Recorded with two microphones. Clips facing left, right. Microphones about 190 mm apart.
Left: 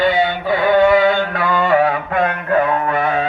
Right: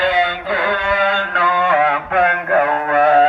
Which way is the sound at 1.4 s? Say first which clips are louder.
Left 1 dB; 60° right (ahead or behind).